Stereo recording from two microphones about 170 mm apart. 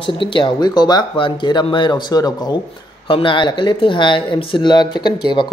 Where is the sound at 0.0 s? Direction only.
30° left (ahead or behind).